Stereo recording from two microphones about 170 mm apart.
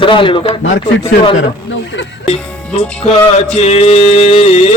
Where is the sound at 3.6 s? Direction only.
40° left (ahead or behind).